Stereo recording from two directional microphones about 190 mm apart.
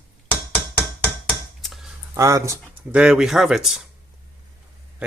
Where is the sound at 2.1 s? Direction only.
15° right (ahead or behind).